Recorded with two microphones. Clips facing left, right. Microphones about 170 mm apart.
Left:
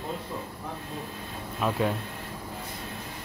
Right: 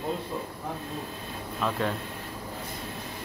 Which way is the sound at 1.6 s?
5° left (ahead or behind).